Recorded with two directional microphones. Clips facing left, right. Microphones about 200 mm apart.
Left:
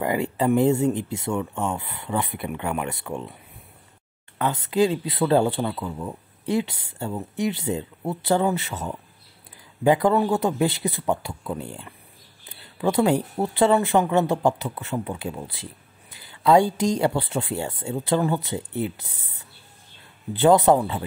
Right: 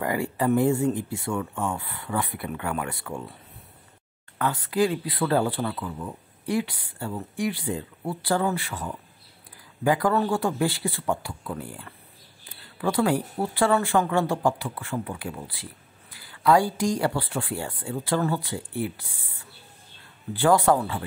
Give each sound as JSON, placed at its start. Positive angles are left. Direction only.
{"t": 0.0, "sound": "speech", "side_deg": 25}
{"t": 4.4, "sound": "speech", "side_deg": 20}